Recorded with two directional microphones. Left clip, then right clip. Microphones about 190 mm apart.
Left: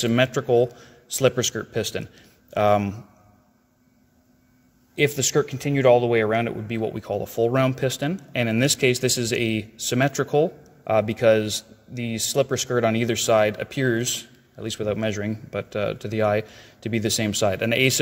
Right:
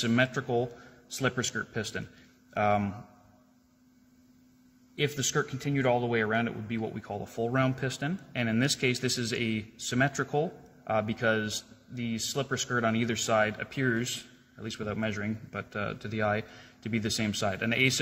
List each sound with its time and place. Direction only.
0.0 s speech: 40° left (ahead or behind)
4.9 s speech: 40° left (ahead or behind)